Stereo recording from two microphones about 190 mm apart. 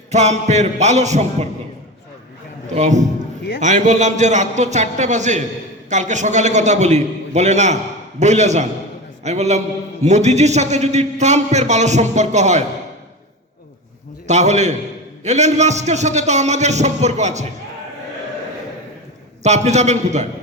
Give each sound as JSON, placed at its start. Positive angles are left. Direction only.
{"t": 0.1, "sound": "a man's voice", "side_deg": -35}
{"t": 2.7, "sound": "a man's voice", "side_deg": -35}
{"t": 14.3, "sound": "a man's voice", "side_deg": -35}
{"t": 19.4, "sound": "a man's voice", "side_deg": -35}